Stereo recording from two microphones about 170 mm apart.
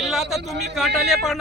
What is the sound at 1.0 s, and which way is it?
Speech, centre (ahead or behind).